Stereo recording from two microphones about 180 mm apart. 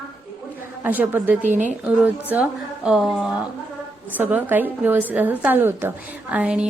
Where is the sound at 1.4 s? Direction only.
45° right (ahead or behind).